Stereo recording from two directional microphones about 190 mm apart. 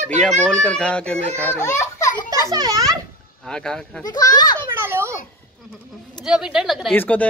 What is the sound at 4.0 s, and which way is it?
Speech, 20° left (ahead or behind).